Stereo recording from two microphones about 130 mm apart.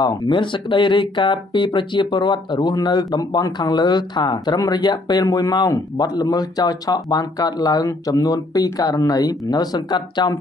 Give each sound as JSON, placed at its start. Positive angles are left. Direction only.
{"t": 0.0, "sound": "speech", "side_deg": 35}